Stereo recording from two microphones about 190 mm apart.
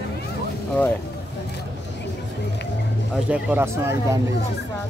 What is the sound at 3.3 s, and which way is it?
Speech, 10° right (ahead or behind).